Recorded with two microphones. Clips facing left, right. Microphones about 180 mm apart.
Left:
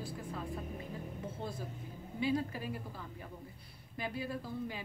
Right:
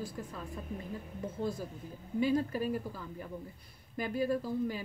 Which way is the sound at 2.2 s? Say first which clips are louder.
Right 5 dB; 45° right (ahead or behind).